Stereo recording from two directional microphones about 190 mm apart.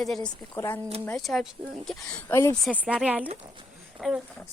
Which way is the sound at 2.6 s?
5° right (ahead or behind).